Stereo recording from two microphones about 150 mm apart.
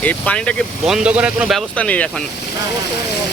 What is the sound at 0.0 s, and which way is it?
Speech, 10° left (ahead or behind).